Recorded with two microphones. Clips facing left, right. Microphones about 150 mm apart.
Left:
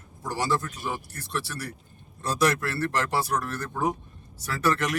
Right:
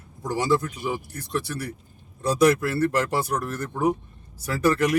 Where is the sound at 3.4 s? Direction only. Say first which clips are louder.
Right 3 dB; 15° right (ahead or behind).